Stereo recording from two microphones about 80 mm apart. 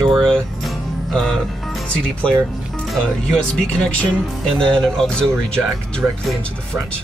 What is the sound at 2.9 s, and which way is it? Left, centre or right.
Speech, centre.